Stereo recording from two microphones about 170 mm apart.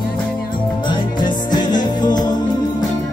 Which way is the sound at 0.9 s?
25° left (ahead or behind).